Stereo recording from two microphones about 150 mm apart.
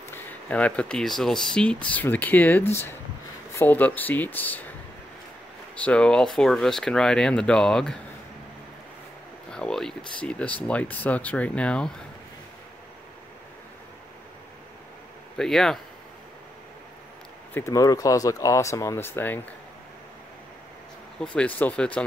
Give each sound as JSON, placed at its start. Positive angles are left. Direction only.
{"t": 0.1, "sound": "speech", "side_deg": 10}
{"t": 5.8, "sound": "speech", "side_deg": 5}
{"t": 9.5, "sound": "speech", "side_deg": 5}
{"t": 15.3, "sound": "speech", "side_deg": 5}
{"t": 17.6, "sound": "speech", "side_deg": 20}
{"t": 21.2, "sound": "speech", "side_deg": 5}